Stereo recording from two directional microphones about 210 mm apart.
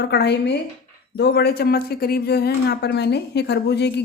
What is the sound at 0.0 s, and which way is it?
Speech, 50° left (ahead or behind).